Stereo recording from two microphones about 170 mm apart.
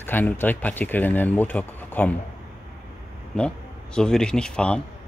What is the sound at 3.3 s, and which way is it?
Speech, 5° left (ahead or behind).